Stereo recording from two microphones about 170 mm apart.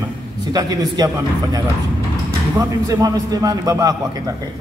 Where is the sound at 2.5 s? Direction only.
20° right (ahead or behind).